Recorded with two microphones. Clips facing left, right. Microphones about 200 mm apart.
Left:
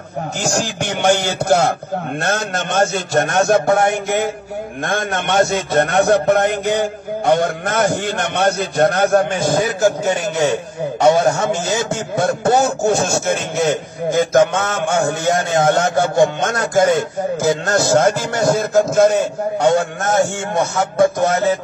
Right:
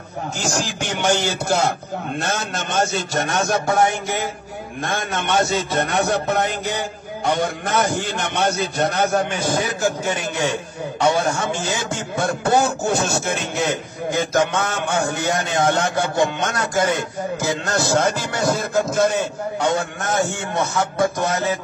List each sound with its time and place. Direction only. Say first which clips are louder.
0.4 s a man's voice: left 4 dB; 50° left (ahead or behind)
11.0 s speech: left 6 dB; 40° left (ahead or behind)